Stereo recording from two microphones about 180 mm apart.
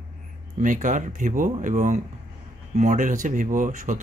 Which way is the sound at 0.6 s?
45° right (ahead or behind).